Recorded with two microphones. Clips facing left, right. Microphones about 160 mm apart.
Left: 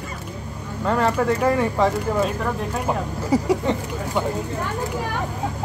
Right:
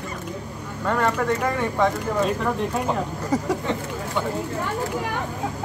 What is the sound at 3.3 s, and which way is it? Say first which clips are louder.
Speech: left 4 dB; 10° left (ahead or behind).